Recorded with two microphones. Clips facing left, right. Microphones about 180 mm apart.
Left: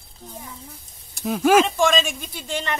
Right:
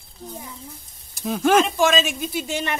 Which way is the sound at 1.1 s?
Centre (ahead or behind).